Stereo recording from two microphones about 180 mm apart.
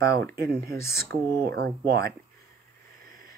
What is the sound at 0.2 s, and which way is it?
Speech, 60° right (ahead or behind).